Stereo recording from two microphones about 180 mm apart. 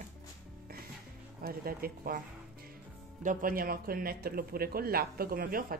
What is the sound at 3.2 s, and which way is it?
Speech, 45° right (ahead or behind).